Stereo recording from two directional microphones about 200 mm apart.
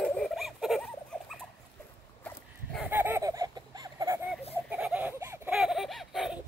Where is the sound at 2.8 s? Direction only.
10° right (ahead or behind).